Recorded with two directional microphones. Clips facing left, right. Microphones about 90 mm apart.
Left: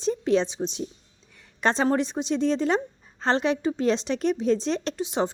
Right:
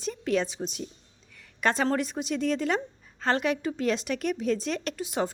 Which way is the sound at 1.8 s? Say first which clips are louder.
Left 4 dB; 25° left (ahead or behind).